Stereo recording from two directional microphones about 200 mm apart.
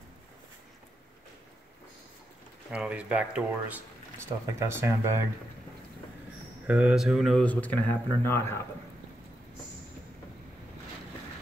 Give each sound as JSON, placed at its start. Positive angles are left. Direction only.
{"t": 2.7, "sound": "speech", "side_deg": -5}
{"t": 6.7, "sound": "speech", "side_deg": -5}